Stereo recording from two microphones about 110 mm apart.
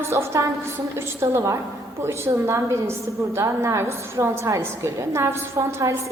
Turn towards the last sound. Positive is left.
turn(degrees=-30)  # may be behind; listen again after turning